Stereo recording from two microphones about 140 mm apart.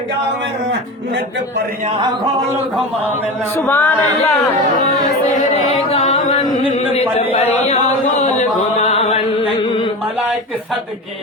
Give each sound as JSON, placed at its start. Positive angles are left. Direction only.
{"t": 3.6, "sound": "speech", "side_deg": 15}
{"t": 5.0, "sound": "music", "side_deg": 55}
{"t": 6.9, "sound": "speech", "side_deg": 45}
{"t": 7.6, "sound": "chant", "side_deg": 50}